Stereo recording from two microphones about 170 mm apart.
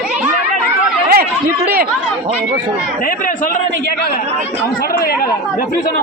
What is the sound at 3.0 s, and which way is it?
Speech, 55° left (ahead or behind).